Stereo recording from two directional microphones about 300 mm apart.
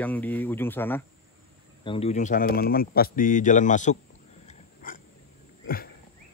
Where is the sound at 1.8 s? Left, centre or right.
Centre.